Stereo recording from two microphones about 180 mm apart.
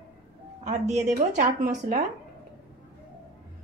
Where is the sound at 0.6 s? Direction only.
40° right (ahead or behind).